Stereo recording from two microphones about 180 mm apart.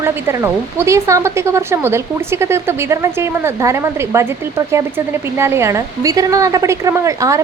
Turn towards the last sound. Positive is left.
turn(degrees=-15)  # may be behind; listen again after turning